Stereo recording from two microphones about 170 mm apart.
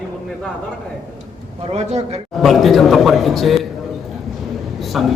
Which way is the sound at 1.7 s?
40° right (ahead or behind).